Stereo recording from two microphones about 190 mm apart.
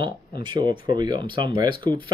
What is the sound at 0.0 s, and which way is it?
Speech, 25° right (ahead or behind).